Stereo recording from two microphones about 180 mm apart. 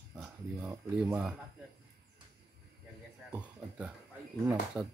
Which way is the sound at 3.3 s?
5° right (ahead or behind).